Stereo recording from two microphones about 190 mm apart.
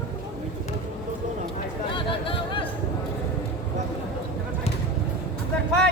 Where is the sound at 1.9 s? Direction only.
25° left (ahead or behind).